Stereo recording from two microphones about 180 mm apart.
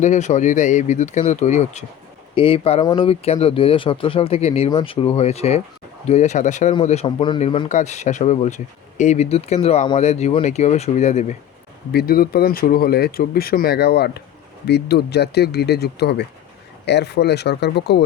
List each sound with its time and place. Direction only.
0.0 s speech: 40° left (ahead or behind)
11.9 s speech: 60° left (ahead or behind)